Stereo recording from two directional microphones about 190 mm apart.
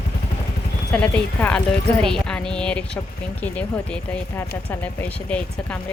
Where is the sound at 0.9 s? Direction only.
5° left (ahead or behind).